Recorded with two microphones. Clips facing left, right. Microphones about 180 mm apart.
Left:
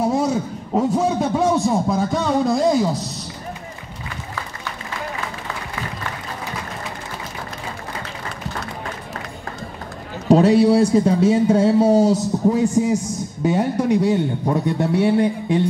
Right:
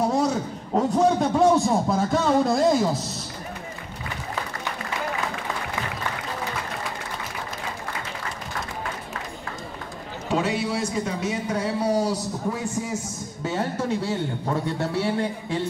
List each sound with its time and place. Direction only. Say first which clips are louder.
0.7 s a man's voice: left 1 dB; centre (ahead or behind)
10.2 s a man's voice: left 12 dB; 40° left (ahead or behind); by 15.6 s 20° left (ahead or behind)